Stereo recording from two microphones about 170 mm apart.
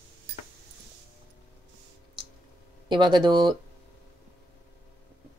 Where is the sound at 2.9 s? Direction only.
25° right (ahead or behind).